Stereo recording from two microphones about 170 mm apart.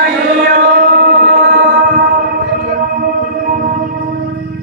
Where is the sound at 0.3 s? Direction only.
70° right (ahead or behind).